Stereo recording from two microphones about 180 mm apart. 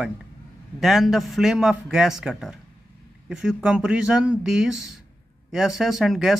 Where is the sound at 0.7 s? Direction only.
Centre (ahead or behind).